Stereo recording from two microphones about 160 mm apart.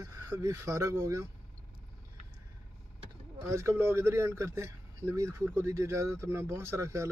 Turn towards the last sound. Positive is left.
turn(degrees=-20)  # may be behind; listen again after turning